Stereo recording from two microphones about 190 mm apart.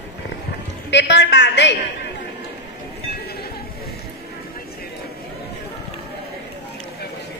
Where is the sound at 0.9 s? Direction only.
65° left (ahead or behind).